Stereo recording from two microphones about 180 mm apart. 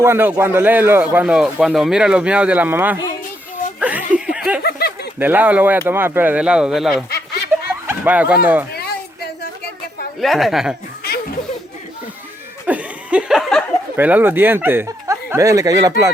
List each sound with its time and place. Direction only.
0.0 s speech: 15° right (ahead or behind)
3.8 s a sound: 10° right (ahead or behind)
5.2 s speech: 10° right (ahead or behind)
8.7 s a sound: 60° left (ahead or behind)
10.2 s a woman's voice: centre (ahead or behind)
12.6 s chuckle: 5° right (ahead or behind)
13.9 s speech: 10° right (ahead or behind)